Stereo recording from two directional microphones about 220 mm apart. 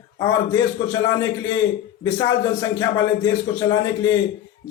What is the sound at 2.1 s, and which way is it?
A man's voice, 20° left (ahead or behind).